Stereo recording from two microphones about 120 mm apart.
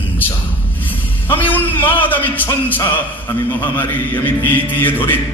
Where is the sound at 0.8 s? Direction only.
15° left (ahead or behind).